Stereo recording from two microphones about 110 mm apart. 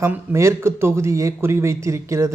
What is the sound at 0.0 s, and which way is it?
Speech, 25° right (ahead or behind).